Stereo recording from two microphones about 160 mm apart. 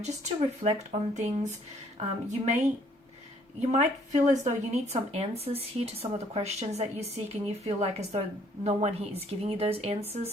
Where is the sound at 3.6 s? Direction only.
45° right (ahead or behind).